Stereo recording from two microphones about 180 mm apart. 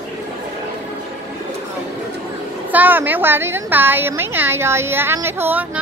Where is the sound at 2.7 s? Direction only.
10° right (ahead or behind).